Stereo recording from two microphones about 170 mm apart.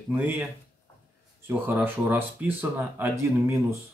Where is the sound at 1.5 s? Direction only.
10° right (ahead or behind).